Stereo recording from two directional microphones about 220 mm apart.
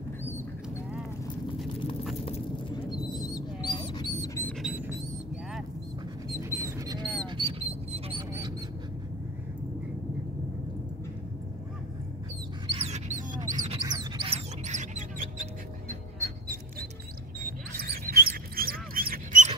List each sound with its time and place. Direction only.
2.2 s clip-clop: 25° left (ahead or behind)
3.1 s bird: 20° left (ahead or behind)
4.5 s a sound: centre (ahead or behind)
6.5 s a sound: 15° right (ahead or behind)
7.2 s duck: 20° right (ahead or behind)
12.6 s dog: 25° right (ahead or behind)
13.7 s a sound: 20° right (ahead or behind); by 15.4 s 35° right (ahead or behind)
15.9 s music: 30° right (ahead or behind)
17.7 s dog: 40° right (ahead or behind)